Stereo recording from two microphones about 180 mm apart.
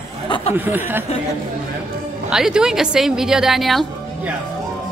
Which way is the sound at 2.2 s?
5° right (ahead or behind).